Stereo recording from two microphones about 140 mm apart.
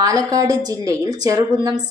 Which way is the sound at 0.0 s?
25° right (ahead or behind).